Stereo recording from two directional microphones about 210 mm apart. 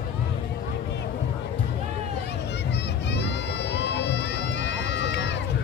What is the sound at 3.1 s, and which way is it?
Crowd, 55° left (ahead or behind).